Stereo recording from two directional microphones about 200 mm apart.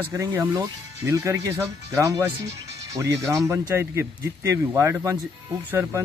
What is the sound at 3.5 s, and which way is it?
Speech, 10° right (ahead or behind).